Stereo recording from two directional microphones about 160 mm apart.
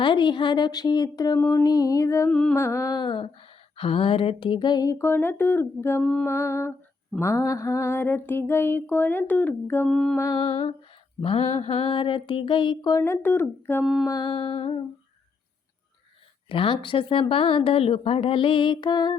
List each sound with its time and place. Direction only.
0.0 s humming: 30° left (ahead or behind)
2.3 s humming: 5° left (ahead or behind)
6.0 s female singing: 5° left (ahead or behind)
6.2 s female singing: 15° left (ahead or behind)
9.9 s female singing: centre (ahead or behind)
10.2 s humming: 20° left (ahead or behind)
10.4 s speech: 40° left (ahead or behind)
13.0 s female singing: 15° left (ahead or behind)
13.8 s female singing: centre (ahead or behind)
14.1 s speech: 30° left (ahead or behind)
16.5 s speech: 35° left (ahead or behind)